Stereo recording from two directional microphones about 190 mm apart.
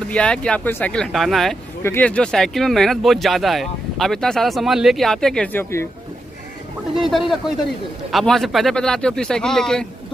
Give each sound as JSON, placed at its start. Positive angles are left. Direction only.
{"t": 0.1, "sound": "speech", "side_deg": 5}
{"t": 1.8, "sound": "speech", "side_deg": 10}
{"t": 7.0, "sound": "speech", "side_deg": 0}